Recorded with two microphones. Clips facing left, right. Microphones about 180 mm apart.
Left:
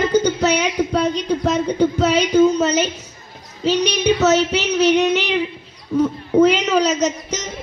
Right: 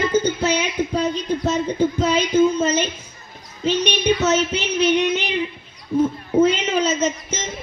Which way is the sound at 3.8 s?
35° left (ahead or behind).